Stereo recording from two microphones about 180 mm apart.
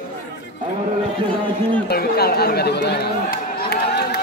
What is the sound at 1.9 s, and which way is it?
Speech, 60° left (ahead or behind).